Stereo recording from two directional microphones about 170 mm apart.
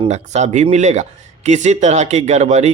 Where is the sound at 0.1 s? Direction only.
40° right (ahead or behind).